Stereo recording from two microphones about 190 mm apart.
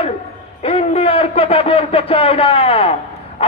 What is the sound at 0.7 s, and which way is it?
A man's voice, 30° left (ahead or behind).